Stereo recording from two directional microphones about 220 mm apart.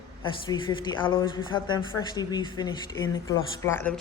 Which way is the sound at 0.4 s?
20° left (ahead or behind).